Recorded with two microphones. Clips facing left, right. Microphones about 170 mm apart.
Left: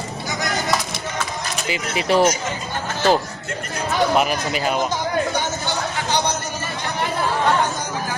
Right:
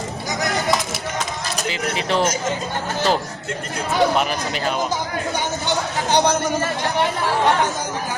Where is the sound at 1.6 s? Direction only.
10° left (ahead or behind).